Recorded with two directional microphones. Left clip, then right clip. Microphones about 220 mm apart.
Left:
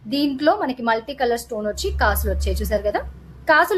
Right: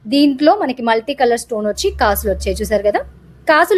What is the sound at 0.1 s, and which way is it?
Speech, 30° right (ahead or behind).